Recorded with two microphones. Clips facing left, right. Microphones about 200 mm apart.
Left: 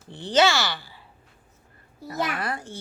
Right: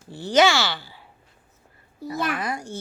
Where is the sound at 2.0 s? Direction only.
10° right (ahead or behind).